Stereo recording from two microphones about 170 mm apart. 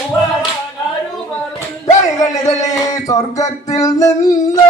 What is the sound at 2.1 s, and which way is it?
Music, 20° left (ahead or behind).